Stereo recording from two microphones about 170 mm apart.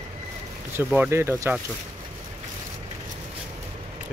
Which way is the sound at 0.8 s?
10° right (ahead or behind).